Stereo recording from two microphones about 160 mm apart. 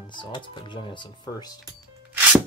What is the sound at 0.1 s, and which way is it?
Speech, 30° left (ahead or behind).